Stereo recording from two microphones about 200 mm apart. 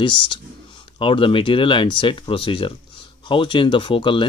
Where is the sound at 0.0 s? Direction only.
25° left (ahead or behind).